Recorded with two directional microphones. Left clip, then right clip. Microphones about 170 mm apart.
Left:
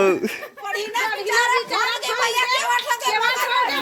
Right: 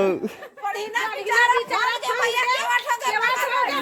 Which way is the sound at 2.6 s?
10° left (ahead or behind).